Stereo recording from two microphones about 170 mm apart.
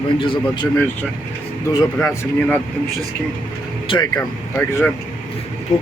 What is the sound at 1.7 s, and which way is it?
Speech, 15° left (ahead or behind).